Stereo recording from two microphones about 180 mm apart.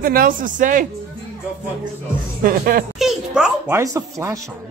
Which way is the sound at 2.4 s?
55° right (ahead or behind).